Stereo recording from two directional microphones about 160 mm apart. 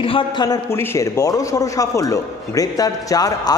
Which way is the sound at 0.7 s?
15° left (ahead or behind).